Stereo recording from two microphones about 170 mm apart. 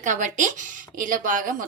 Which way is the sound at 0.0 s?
45° right (ahead or behind).